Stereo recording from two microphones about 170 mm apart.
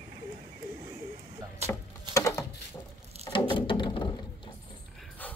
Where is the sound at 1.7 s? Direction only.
20° left (ahead or behind).